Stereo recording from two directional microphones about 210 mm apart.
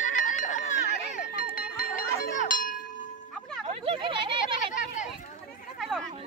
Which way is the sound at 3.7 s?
25° right (ahead or behind).